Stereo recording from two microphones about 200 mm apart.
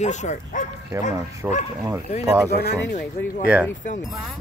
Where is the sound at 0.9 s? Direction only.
15° right (ahead or behind).